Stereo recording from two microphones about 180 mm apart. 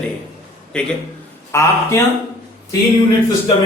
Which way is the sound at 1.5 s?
15° left (ahead or behind).